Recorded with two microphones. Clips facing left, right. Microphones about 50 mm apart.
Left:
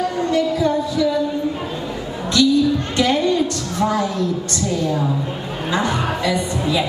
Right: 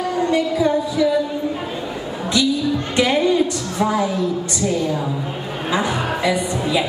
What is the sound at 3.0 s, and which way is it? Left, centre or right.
A woman's voice, centre.